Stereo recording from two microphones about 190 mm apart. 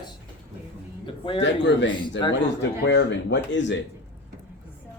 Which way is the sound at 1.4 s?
70° left (ahead or behind).